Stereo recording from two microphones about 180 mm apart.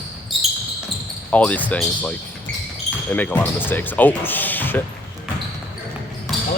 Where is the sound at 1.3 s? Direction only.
10° left (ahead or behind).